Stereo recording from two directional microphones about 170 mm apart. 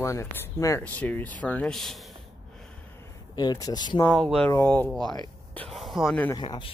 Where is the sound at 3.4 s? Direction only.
25° left (ahead or behind).